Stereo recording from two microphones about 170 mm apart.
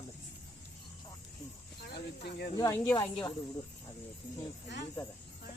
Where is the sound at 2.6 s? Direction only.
20° left (ahead or behind).